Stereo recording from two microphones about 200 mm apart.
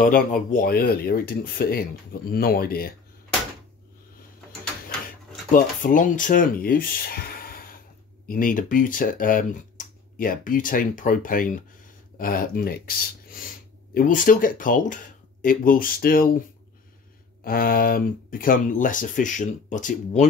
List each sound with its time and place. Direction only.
0.0 s speech: 45° left (ahead or behind)
5.5 s speech: 40° left (ahead or behind)